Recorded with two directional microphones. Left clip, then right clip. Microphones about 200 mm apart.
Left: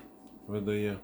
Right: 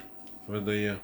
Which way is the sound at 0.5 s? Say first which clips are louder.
Right 2 dB; 10° left (ahead or behind).